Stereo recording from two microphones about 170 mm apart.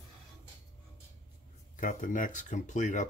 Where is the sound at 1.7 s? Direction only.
50° left (ahead or behind).